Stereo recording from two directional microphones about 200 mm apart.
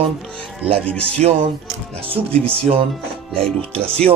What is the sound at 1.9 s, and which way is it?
Speech, 30° right (ahead or behind).